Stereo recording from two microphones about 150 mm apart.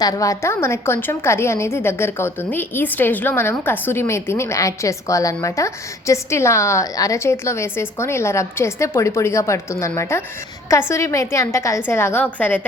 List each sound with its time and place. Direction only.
0.0 s a woman's voice: 25° left (ahead or behind)